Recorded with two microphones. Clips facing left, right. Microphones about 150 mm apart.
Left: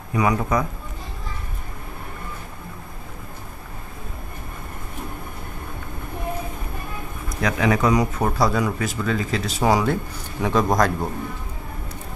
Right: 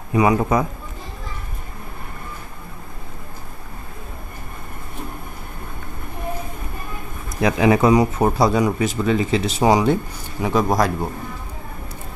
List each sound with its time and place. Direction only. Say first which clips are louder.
0.1 s speech: right 4 dB; 25° right (ahead or behind)
7.4 s speech: right 5 dB; 25° right (ahead or behind)
10.4 s a man's voice: right 1 dB; 5° right (ahead or behind)